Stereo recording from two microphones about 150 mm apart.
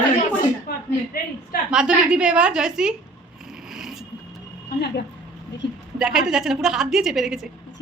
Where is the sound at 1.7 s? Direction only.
5° right (ahead or behind).